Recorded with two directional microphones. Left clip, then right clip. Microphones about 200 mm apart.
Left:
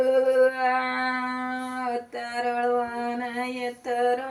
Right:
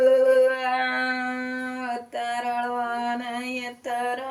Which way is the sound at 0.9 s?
10° right (ahead or behind).